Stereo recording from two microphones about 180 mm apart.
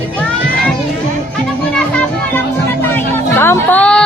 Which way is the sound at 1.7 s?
5° left (ahead or behind).